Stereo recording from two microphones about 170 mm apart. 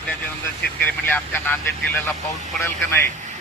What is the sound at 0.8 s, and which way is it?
Speech, 10° left (ahead or behind).